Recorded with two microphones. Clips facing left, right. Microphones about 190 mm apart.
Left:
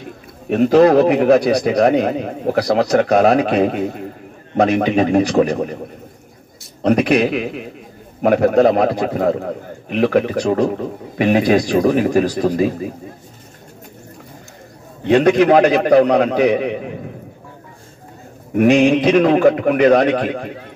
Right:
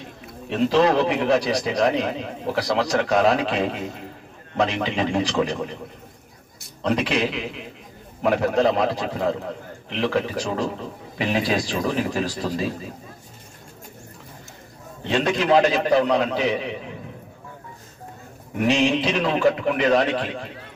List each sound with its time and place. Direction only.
0.5 s a man's voice: 50° left (ahead or behind)
6.9 s a man's voice: 50° left (ahead or behind)
15.0 s a man's voice: 50° left (ahead or behind)
18.6 s a man's voice: 50° left (ahead or behind)